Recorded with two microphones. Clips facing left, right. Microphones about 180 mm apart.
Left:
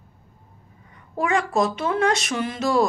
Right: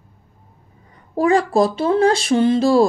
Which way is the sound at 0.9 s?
35° right (ahead or behind).